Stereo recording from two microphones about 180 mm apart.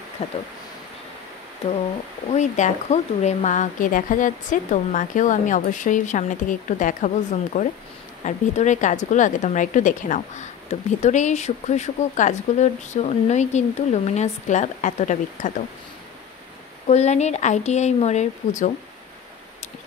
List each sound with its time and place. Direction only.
0.2 s a woman's voice: 35° left (ahead or behind)
2.3 s a woman's voice: 40° left (ahead or behind)
16.8 s a woman's voice: 35° left (ahead or behind)